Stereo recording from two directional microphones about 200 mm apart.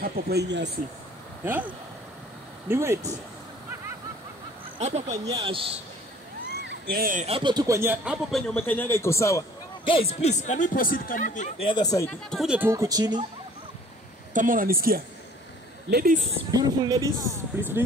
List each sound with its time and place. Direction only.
0.0 s speech: 55° right (ahead or behind)
1.4 s speech: 10° right (ahead or behind)
2.7 s speech: 15° right (ahead or behind)
4.7 s speech: 35° right (ahead or behind)
5.2 s speech: 20° right (ahead or behind)
6.6 s cat: 55° right (ahead or behind)
7.2 s speech: 25° right (ahead or behind); by 9.4 s 15° left (ahead or behind)
9.8 s speech: 30° left (ahead or behind)
12.1 s speech: centre (ahead or behind); by 13.2 s 20° right (ahead or behind)
14.3 s speech: 40° right (ahead or behind)
16.5 s speech: 20° right (ahead or behind)